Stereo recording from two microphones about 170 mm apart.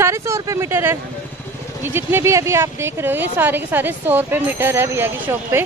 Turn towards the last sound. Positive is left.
turn(degrees=-15)  # may be behind; listen again after turning